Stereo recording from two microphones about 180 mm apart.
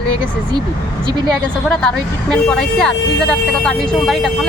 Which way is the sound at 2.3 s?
5° left (ahead or behind).